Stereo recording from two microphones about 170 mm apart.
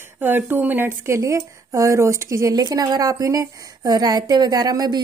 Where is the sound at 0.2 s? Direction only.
10° right (ahead or behind).